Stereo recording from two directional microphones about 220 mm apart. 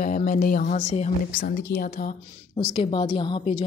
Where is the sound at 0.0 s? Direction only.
35° left (ahead or behind).